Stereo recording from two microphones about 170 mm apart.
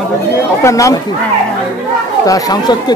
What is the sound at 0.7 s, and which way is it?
Speech, 20° left (ahead or behind).